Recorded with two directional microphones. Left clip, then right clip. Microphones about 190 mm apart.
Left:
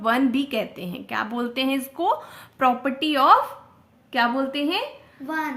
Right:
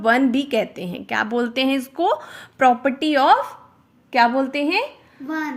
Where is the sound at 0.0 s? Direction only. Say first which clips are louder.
Right 4 dB; 25° right (ahead or behind).